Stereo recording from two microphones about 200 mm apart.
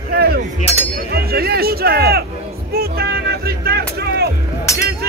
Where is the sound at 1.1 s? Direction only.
50° right (ahead or behind).